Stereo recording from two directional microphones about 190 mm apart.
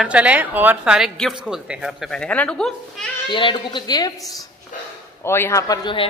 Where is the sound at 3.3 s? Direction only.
25° left (ahead or behind).